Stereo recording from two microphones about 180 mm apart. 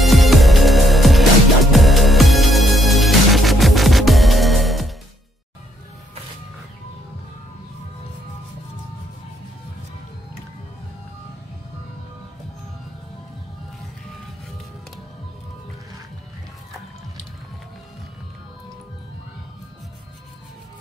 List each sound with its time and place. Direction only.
0.0 s music: centre (ahead or behind)